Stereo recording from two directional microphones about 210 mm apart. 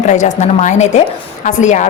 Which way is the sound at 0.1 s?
35° left (ahead or behind).